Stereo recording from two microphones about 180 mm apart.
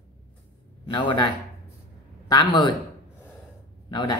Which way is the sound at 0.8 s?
25° left (ahead or behind).